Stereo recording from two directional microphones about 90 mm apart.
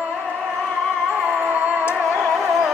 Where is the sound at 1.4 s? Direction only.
20° right (ahead or behind).